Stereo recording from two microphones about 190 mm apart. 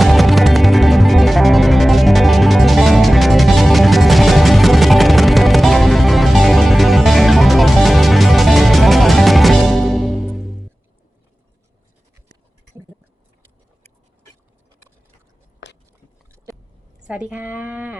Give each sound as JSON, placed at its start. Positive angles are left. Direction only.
{"t": 0.0, "sound": "music", "side_deg": 0}
{"t": 15.6, "sound": "a sound", "side_deg": 65}
{"t": 17.1, "sound": "speech", "side_deg": -5}